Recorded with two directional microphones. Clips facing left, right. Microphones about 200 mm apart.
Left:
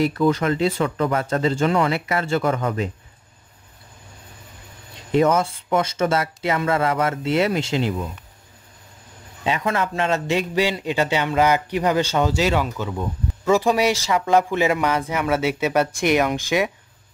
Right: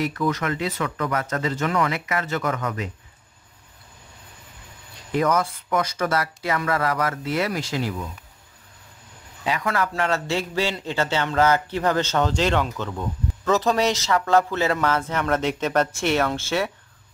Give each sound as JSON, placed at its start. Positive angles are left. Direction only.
{"t": 0.0, "sound": "speech", "side_deg": 30}
{"t": 5.1, "sound": "speech", "side_deg": 25}
{"t": 9.4, "sound": "a man's voice", "side_deg": 25}